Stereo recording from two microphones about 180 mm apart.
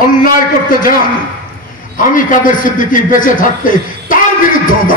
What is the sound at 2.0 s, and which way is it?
A man's voice, 45° left (ahead or behind).